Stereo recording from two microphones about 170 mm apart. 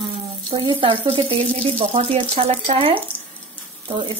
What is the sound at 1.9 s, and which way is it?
A woman's voice, 35° right (ahead or behind).